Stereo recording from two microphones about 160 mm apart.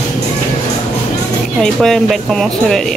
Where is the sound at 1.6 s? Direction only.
Centre (ahead or behind).